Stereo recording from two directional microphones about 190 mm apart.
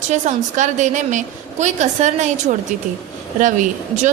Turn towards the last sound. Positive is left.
turn(degrees=-40)  # may be behind; listen again after turning